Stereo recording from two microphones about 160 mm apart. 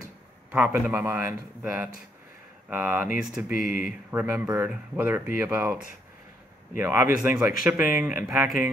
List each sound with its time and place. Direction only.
0.5 s speech: 10° right (ahead or behind)
3.4 s speech: 60° left (ahead or behind)
4.1 s speech: 10° right (ahead or behind)
6.8 s speech: 15° right (ahead or behind)
7.2 s speech: 5° right (ahead or behind)